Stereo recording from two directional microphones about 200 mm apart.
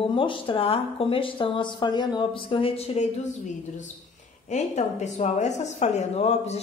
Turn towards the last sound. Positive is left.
turn(degrees=30)  # may be behind; listen again after turning